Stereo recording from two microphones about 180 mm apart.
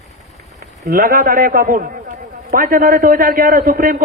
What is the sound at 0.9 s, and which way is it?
A man's voice, 50° right (ahead or behind).